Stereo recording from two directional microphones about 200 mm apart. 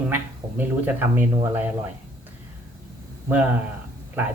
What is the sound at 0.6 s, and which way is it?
Speech, 10° right (ahead or behind).